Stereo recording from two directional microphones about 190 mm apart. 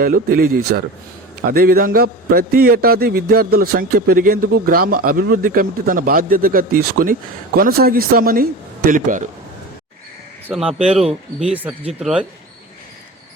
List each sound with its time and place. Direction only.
0.0 s a man's voice: 50° right (ahead or behind)
10.4 s speech: 5° right (ahead or behind)